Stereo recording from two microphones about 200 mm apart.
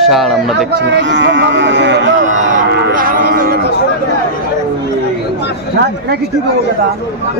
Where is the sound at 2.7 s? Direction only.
50° right (ahead or behind).